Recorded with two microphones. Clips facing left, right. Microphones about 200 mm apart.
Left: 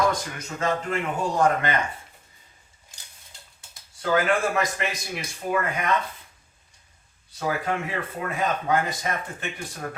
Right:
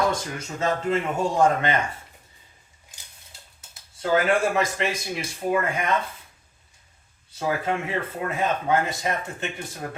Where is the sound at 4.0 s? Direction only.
25° right (ahead or behind).